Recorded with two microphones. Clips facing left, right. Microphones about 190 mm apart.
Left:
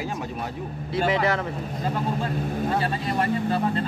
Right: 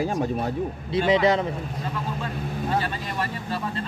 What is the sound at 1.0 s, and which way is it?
Speech, 20° right (ahead or behind).